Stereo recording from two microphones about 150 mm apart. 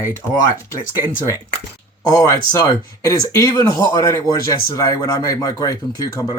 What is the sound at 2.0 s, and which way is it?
Speech, 25° left (ahead or behind).